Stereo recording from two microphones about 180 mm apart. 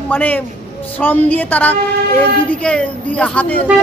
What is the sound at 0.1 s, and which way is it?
Speech, 10° left (ahead or behind).